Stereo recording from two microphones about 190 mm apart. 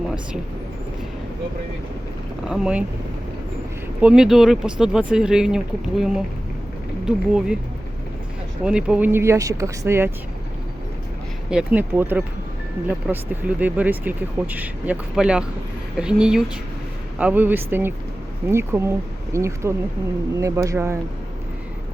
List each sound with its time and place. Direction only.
2.5 s speech: 5° right (ahead or behind)
4.0 s speech: 5° right (ahead or behind)
8.6 s speech: 5° right (ahead or behind)
11.5 s speech: 10° right (ahead or behind)